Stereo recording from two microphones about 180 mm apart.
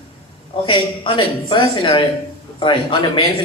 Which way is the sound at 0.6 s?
25° left (ahead or behind).